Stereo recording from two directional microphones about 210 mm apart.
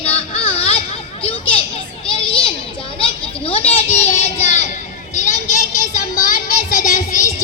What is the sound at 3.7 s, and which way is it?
Child singing, 30° left (ahead or behind).